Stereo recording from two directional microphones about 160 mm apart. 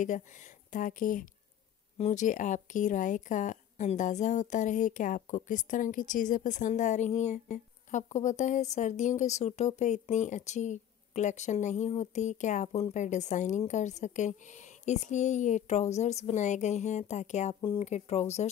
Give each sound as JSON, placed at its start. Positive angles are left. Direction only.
{"t": 0.0, "sound": "speech", "side_deg": 50}
{"t": 17.6, "sound": "speech", "side_deg": 30}
{"t": 17.8, "sound": "speech", "side_deg": 45}